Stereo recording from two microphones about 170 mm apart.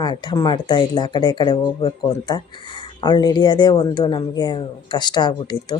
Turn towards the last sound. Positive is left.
turn(degrees=25)  # may be behind; listen again after turning